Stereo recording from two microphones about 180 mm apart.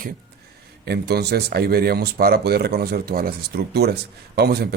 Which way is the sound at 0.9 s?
60° right (ahead or behind).